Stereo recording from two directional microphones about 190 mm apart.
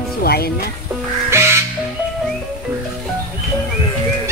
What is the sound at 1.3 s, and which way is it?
Music, 15° right (ahead or behind).